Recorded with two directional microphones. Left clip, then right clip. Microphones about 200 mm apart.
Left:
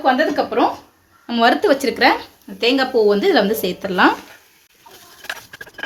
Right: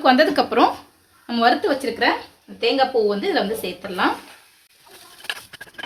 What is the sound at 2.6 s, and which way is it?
Speech, 55° left (ahead or behind).